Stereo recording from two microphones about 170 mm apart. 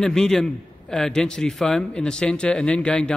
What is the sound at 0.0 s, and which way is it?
A man's voice, 5° left (ahead or behind).